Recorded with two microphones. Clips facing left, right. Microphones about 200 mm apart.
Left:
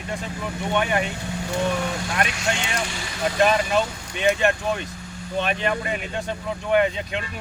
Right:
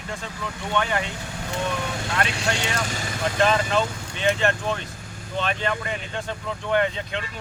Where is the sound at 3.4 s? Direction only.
15° left (ahead or behind).